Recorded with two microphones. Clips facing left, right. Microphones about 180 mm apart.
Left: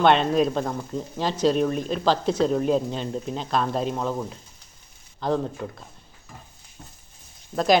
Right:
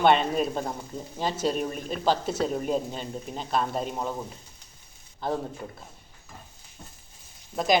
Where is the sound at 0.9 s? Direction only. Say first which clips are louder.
Left 7 dB; 30° left (ahead or behind).